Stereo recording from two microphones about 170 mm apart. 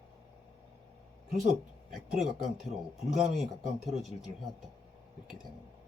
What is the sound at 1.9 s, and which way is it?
Speech, centre (ahead or behind).